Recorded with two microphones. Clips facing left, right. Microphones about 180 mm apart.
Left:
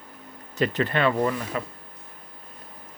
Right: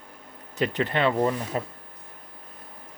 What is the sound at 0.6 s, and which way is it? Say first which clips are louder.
Speech: left 1 dB; 20° right (ahead or behind).